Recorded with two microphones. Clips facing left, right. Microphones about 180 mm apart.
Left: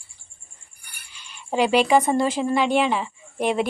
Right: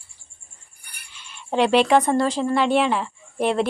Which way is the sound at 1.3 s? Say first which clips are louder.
Right 1 dB; 5° left (ahead or behind).